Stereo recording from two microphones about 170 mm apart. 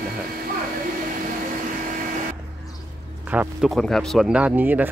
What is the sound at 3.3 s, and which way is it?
Speech, 10° right (ahead or behind).